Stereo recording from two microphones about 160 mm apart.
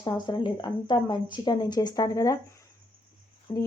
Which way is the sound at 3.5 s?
35° left (ahead or behind).